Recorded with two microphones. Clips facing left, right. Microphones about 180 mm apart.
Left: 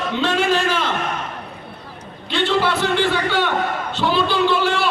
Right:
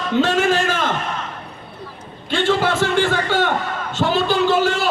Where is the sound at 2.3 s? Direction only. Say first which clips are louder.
Right 1 dB; 45° right (ahead or behind).